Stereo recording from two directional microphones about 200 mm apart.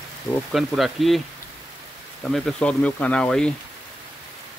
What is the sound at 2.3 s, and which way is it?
Speech, 5° left (ahead or behind).